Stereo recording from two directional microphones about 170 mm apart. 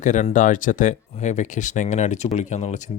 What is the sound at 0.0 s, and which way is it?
Speech, 45° left (ahead or behind).